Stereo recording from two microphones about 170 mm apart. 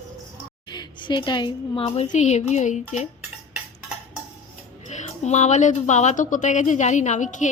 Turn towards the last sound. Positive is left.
turn(degrees=45)  # may be behind; listen again after turning